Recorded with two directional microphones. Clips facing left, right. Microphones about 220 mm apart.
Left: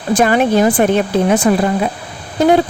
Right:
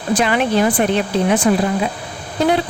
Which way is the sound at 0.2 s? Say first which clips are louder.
Left 5 dB; 45° left (ahead or behind).